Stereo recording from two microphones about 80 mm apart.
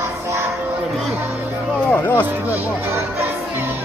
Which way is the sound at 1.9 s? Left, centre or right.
Left.